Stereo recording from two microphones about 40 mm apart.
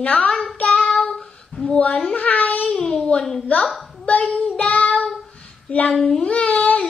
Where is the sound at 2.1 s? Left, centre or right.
Left.